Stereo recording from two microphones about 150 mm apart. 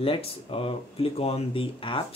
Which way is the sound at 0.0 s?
40° left (ahead or behind).